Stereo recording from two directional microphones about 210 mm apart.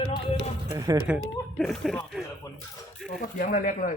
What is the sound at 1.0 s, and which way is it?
Speech, 5° right (ahead or behind).